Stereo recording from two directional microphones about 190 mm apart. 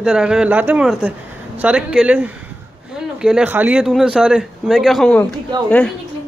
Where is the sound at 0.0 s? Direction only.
5° right (ahead or behind).